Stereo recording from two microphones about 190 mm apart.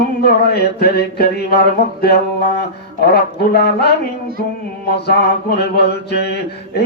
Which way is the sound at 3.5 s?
55° left (ahead or behind).